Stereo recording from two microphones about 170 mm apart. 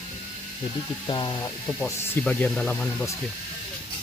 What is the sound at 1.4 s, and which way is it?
Speech, 15° left (ahead or behind).